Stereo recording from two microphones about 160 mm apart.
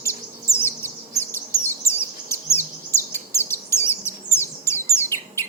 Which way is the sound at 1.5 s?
15° left (ahead or behind).